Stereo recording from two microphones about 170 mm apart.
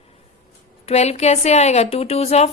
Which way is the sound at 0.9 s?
40° left (ahead or behind).